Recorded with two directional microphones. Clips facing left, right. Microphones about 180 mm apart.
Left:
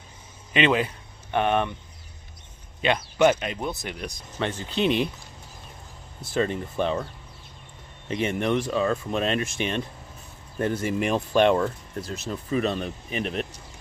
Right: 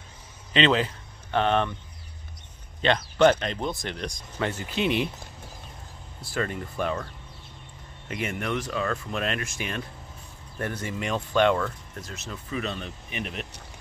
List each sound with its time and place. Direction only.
0.5 s speech: 15° left (ahead or behind)
2.8 s speech: 10° left (ahead or behind)
4.4 s speech: 25° left (ahead or behind)
6.2 s speech: 25° left (ahead or behind)
8.1 s speech: 25° left (ahead or behind)